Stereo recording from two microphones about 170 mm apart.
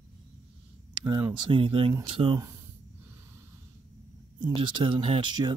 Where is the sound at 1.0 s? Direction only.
25° right (ahead or behind).